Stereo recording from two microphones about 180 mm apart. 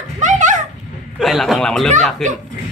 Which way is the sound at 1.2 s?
Centre (ahead or behind).